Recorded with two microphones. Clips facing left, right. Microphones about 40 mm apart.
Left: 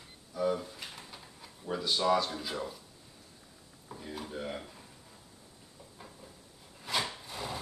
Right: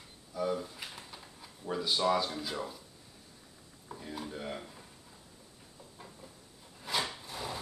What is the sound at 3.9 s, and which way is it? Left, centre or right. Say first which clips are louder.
Speech: even; centre.